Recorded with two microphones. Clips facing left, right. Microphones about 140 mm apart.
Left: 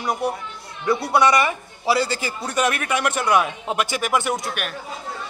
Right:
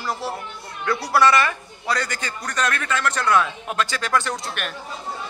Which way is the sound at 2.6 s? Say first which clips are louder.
Left 1 dB; 20° left (ahead or behind).